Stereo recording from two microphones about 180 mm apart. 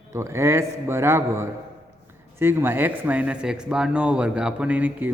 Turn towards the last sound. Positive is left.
turn(degrees=-10)  # may be behind; listen again after turning